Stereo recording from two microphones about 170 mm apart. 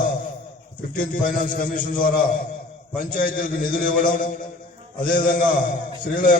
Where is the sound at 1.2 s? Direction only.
50° left (ahead or behind).